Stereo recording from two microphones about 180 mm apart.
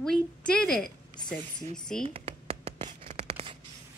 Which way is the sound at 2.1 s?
35° right (ahead or behind).